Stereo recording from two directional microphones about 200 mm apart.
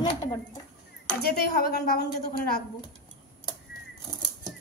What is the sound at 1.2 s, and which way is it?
A woman's voice, 50° left (ahead or behind).